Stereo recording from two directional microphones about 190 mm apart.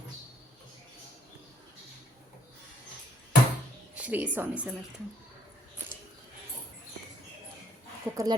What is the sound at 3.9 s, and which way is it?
Speech, 5° right (ahead or behind).